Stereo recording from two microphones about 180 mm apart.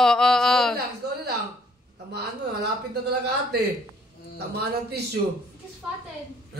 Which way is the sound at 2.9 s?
65° right (ahead or behind).